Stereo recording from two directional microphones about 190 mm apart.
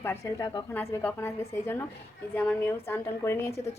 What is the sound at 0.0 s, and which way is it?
A woman's voice, 10° left (ahead or behind).